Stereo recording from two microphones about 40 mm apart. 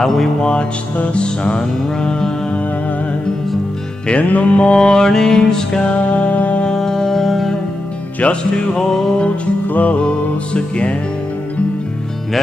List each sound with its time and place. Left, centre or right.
0.0 s music: centre
0.4 s mantra: left
4.1 s mantra: left; by 5.8 s centre
5.8 s music: left
6.6 s music: centre
9.7 s music: left